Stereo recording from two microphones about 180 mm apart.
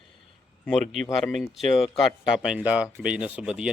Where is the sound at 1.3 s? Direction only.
Centre (ahead or behind).